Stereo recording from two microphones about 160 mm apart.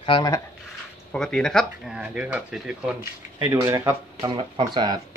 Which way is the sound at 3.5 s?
20° right (ahead or behind).